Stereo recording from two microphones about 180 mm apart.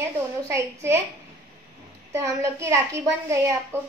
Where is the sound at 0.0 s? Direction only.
15° right (ahead or behind).